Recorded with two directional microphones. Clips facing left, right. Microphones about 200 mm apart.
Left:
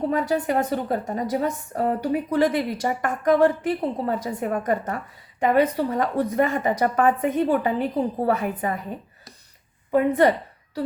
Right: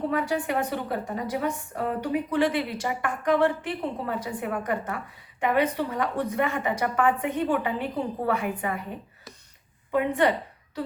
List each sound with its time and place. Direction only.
0.1 s a woman's voice: 40° left (ahead or behind)
9.9 s a woman's voice: 40° left (ahead or behind)